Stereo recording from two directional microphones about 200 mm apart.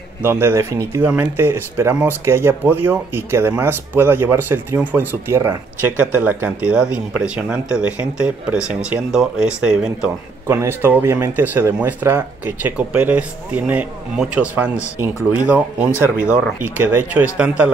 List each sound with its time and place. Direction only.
0.2 s speech: 10° right (ahead or behind)